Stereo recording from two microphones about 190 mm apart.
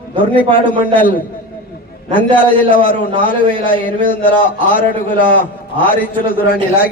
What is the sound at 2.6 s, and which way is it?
A man's voice, 45° left (ahead or behind).